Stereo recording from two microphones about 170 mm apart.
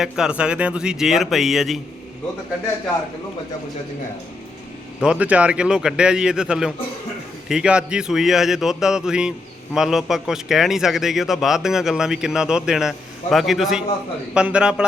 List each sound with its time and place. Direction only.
0.0 s a man's voice: 5° right (ahead or behind)
4.9 s a man's voice: 5° right (ahead or behind)